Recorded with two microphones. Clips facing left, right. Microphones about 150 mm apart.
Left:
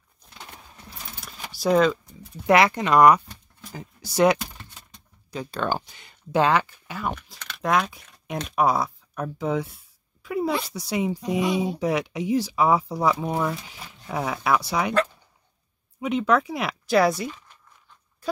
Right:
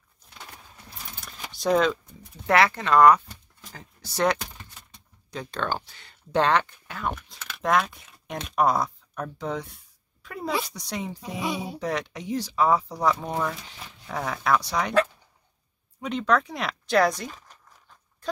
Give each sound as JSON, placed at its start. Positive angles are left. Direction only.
{"t": 1.2, "sound": "keys jangling", "side_deg": 5}
{"t": 2.4, "sound": "speech", "side_deg": 15}
{"t": 11.4, "sound": "speech", "side_deg": 0}
{"t": 16.0, "sound": "speech", "side_deg": 5}
{"t": 17.3, "sound": "a sound", "side_deg": -40}